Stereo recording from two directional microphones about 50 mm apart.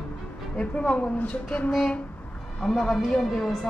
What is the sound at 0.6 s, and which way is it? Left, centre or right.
Speech, left.